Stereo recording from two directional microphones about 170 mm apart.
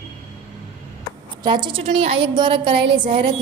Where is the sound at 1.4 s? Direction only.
25° right (ahead or behind).